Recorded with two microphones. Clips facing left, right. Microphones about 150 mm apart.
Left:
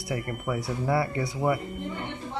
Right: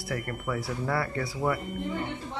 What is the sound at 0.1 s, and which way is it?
Speech, 15° left (ahead or behind).